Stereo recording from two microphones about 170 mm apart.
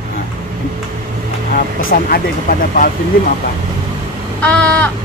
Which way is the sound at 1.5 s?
55° left (ahead or behind).